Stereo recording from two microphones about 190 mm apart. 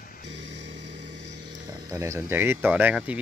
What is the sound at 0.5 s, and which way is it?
Vehicle, 65° right (ahead or behind).